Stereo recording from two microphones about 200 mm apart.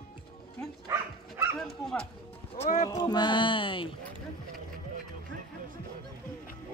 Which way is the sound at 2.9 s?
20° left (ahead or behind).